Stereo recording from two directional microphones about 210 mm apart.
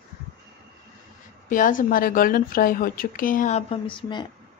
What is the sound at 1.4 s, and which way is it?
A woman's voice, 40° left (ahead or behind).